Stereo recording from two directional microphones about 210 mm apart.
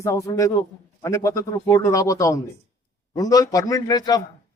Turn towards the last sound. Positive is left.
turn(degrees=20)  # may be behind; listen again after turning